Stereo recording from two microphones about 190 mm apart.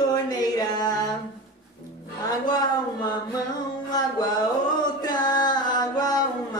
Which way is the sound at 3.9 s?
20° left (ahead or behind).